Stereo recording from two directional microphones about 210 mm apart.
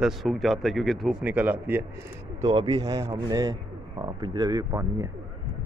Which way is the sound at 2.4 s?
25° right (ahead or behind).